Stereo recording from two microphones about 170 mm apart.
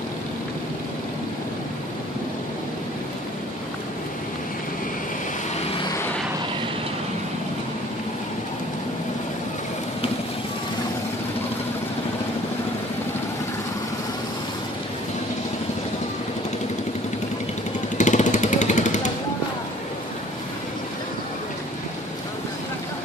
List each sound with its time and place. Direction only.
17.9 s motorcycle: 45° left (ahead or behind)